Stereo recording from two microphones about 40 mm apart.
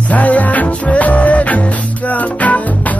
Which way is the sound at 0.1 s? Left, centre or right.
Left.